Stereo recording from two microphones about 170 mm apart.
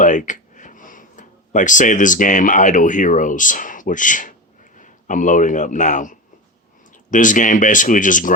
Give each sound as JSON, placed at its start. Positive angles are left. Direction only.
{"t": 0.0, "sound": "speech", "side_deg": 50}